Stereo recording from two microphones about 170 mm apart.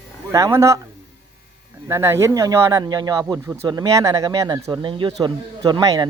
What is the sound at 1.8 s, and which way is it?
Speech, 15° right (ahead or behind).